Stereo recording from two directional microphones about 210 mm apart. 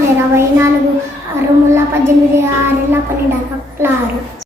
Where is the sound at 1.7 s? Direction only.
10° right (ahead or behind).